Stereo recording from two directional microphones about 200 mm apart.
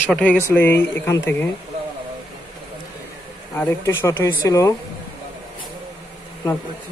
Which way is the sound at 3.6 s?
15° left (ahead or behind).